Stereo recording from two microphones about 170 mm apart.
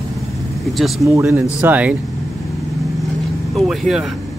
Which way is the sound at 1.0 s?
15° right (ahead or behind).